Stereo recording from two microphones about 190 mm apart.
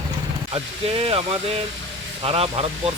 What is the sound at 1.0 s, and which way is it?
Speech, 30° right (ahead or behind).